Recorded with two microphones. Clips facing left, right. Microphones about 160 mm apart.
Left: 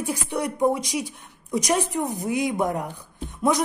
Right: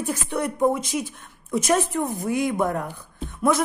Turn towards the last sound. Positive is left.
turn(degrees=15)  # may be behind; listen again after turning